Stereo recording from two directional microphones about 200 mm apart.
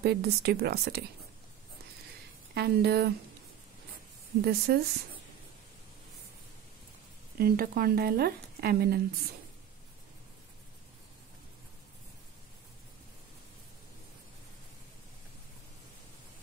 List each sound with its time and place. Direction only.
0.0 s speech: 55° right (ahead or behind)
2.5 s speech: 55° right (ahead or behind)
4.5 s speech: 50° right (ahead or behind)
7.3 s speech: 50° right (ahead or behind)